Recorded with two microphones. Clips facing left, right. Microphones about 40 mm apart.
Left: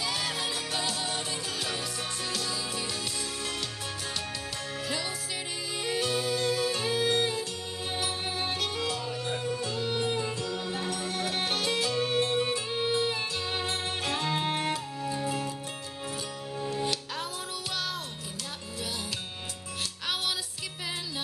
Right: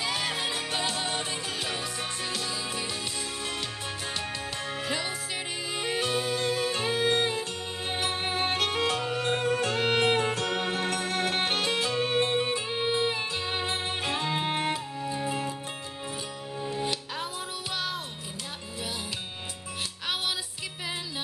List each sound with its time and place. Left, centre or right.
0.0 s music: right
4.8 s music: right
16.6 s music: centre